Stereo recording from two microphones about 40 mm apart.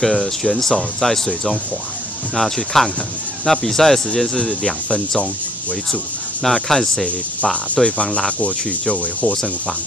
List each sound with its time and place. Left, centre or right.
0.0 s speech: centre
6.4 s speech: centre
7.7 s speech: left